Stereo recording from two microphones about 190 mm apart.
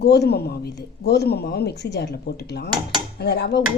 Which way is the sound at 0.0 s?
60° left (ahead or behind).